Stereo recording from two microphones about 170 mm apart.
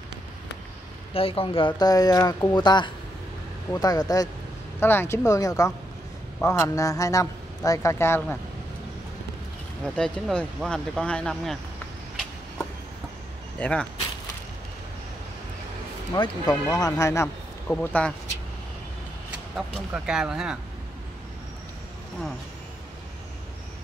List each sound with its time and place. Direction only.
1.1 s a man's voice: 35° left (ahead or behind); by 8.4 s 15° left (ahead or behind)
9.9 s speech: 5° left (ahead or behind)
13.6 s speech: 5° left (ahead or behind)
16.2 s a man's voice: 20° left (ahead or behind)
19.3 s speech: 5° right (ahead or behind)